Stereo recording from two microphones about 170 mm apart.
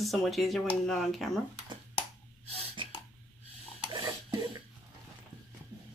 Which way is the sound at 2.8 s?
30° right (ahead or behind).